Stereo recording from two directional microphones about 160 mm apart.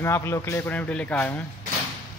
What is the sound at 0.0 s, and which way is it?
Speech, 15° left (ahead or behind).